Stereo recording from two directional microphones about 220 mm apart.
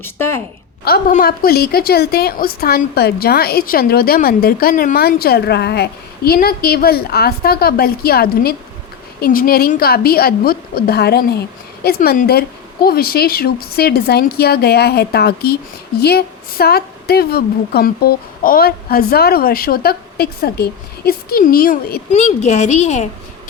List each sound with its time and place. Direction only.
0.0 s a woman's voice: 10° left (ahead or behind)
0.9 s a woman's voice: 45° left (ahead or behind)
22.1 s a woman's voice: 30° left (ahead or behind)